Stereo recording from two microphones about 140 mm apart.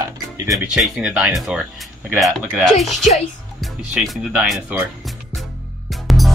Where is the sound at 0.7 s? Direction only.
5° right (ahead or behind).